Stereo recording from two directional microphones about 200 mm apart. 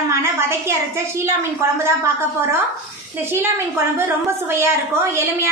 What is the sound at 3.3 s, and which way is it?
A woman's voice, 10° right (ahead or behind).